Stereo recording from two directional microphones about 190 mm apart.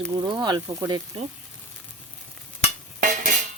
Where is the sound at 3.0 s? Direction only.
40° right (ahead or behind).